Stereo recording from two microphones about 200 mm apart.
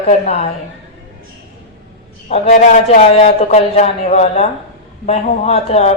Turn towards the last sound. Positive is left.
turn(degrees=30)  # may be behind; listen again after turning